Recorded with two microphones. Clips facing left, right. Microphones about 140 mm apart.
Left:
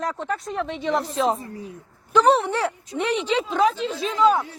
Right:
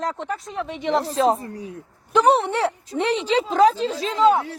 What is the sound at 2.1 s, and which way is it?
A woman's voice, 20° right (ahead or behind).